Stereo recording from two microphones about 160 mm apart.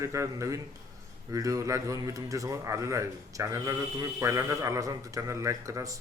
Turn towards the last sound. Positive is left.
turn(degrees=-20)  # may be behind; listen again after turning